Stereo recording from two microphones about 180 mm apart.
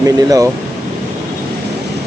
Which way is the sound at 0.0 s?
20° right (ahead or behind).